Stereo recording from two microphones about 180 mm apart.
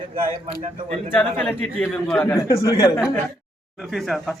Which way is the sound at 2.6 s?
25° left (ahead or behind).